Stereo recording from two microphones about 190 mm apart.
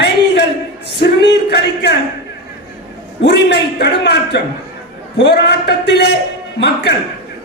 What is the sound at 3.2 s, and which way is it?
Speech, 65° left (ahead or behind).